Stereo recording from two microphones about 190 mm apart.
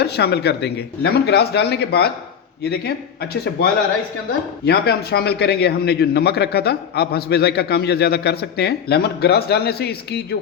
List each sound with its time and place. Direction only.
0.0 s a man's voice: 60° left (ahead or behind)